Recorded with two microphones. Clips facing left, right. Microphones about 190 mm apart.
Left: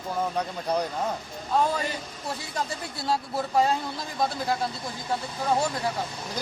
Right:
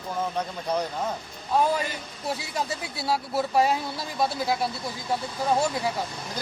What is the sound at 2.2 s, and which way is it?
Speech, 10° right (ahead or behind).